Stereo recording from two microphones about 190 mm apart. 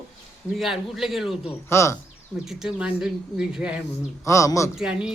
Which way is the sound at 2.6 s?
5° right (ahead or behind).